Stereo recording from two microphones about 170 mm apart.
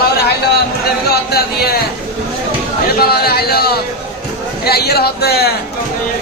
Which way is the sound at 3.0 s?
65° left (ahead or behind).